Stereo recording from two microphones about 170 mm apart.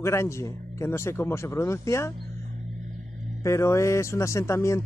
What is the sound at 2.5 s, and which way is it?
Music, 45° right (ahead or behind).